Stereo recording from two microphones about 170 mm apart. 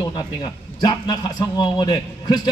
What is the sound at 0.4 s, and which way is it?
A man's voice, 25° left (ahead or behind).